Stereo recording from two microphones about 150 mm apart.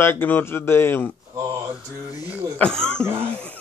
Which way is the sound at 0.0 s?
15° left (ahead or behind).